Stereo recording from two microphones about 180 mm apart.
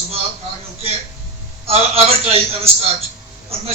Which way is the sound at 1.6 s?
35° right (ahead or behind).